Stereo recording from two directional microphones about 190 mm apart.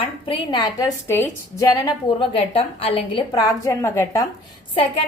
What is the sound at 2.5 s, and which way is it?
A woman's voice, 30° left (ahead or behind).